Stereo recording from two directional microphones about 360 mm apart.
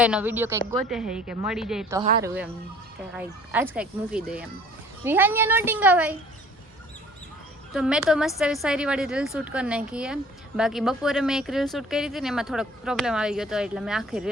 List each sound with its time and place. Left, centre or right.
0.0 s speech: centre
7.7 s speech: centre